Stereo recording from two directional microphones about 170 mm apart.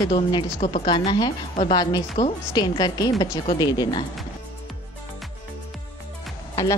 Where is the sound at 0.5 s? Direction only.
40° left (ahead or behind).